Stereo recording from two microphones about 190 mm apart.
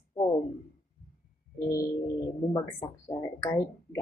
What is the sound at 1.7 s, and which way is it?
Speech, 15° left (ahead or behind).